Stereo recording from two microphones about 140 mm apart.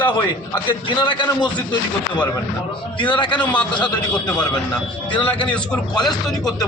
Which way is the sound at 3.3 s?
10° left (ahead or behind).